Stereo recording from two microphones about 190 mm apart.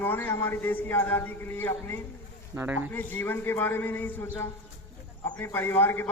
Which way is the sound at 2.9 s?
10° left (ahead or behind).